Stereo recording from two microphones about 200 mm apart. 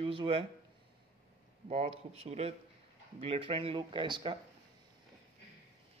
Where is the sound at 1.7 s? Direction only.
30° right (ahead or behind).